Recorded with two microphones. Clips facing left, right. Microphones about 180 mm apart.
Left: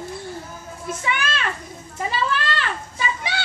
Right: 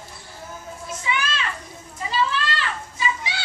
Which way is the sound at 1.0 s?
55° left (ahead or behind).